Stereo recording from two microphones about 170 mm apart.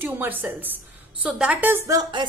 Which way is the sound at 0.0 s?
10° right (ahead or behind).